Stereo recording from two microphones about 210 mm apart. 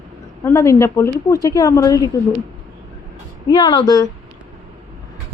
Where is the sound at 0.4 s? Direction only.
15° left (ahead or behind).